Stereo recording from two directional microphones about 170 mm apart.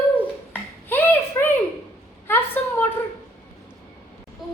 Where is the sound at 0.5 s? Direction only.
10° left (ahead or behind).